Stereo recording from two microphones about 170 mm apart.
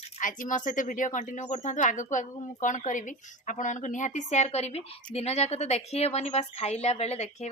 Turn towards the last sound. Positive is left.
turn(degrees=40)  # may be behind; listen again after turning